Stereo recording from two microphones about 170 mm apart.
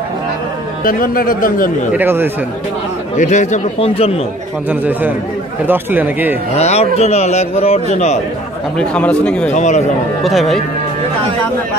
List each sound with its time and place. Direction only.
0.8 s a man's voice: 55° left (ahead or behind)
2.0 s speech: 10° right (ahead or behind)
3.2 s a man's voice: 45° left (ahead or behind)
4.6 s speech: 10° right (ahead or behind)
6.6 s a man's voice: 40° left (ahead or behind)
8.7 s speech: 5° left (ahead or behind)
9.5 s a man's voice: 45° left (ahead or behind)
10.2 s speech: centre (ahead or behind)